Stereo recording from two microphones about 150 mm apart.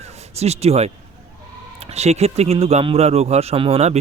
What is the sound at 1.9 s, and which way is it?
Speech, 45° right (ahead or behind).